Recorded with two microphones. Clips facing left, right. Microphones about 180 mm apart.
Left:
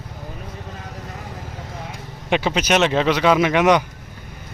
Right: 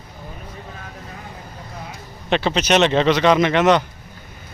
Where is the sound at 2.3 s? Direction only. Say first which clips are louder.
Right 1 dB; 10° left (ahead or behind).